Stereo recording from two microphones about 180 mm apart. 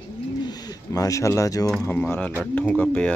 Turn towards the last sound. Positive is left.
turn(degrees=10)  # may be behind; listen again after turning